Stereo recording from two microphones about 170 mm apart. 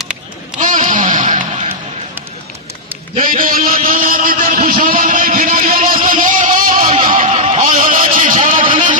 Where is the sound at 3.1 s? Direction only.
50° right (ahead or behind).